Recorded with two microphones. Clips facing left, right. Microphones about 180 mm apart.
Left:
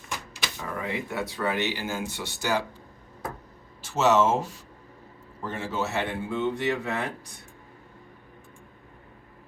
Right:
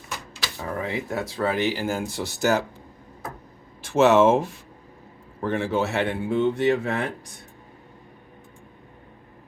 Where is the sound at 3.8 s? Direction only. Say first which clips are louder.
Right 5 dB; 55° right (ahead or behind).